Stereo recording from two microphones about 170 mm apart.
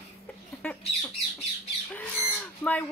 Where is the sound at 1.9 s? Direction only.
10° left (ahead or behind).